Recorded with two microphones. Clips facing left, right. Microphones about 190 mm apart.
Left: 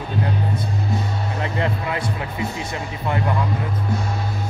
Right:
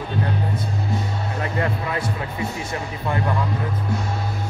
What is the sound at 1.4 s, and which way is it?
Music, 20° left (ahead or behind).